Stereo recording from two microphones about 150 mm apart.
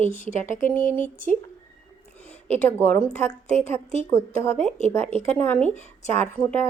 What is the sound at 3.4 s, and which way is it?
Speech, 50° left (ahead or behind).